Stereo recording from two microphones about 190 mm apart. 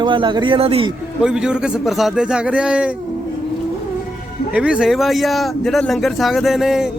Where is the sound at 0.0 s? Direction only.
25° right (ahead or behind).